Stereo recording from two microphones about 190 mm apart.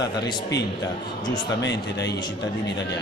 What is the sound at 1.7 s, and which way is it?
Speech, 65° left (ahead or behind).